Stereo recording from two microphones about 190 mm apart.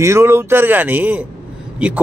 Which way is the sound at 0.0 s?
15° right (ahead or behind).